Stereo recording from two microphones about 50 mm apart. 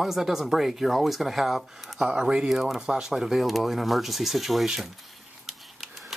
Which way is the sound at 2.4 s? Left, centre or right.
Centre.